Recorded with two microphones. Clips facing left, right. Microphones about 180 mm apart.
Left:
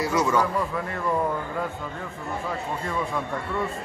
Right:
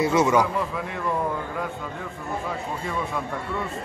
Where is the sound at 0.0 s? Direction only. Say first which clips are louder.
Right 3 dB; 25° right (ahead or behind).